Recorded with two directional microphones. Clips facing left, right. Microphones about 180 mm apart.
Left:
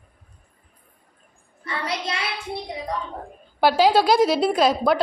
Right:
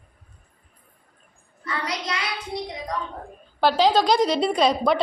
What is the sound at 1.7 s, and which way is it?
Child singing, 25° left (ahead or behind).